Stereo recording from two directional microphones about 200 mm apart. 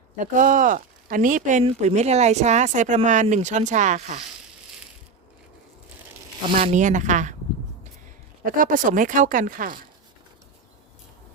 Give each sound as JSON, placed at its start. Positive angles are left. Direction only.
{"t": 0.2, "sound": "speech", "side_deg": -40}
{"t": 6.6, "sound": "speech", "side_deg": -35}
{"t": 8.4, "sound": "speech", "side_deg": -45}